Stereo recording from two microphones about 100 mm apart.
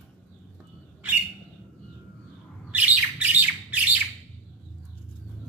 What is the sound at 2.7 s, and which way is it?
Bird, 15° right (ahead or behind).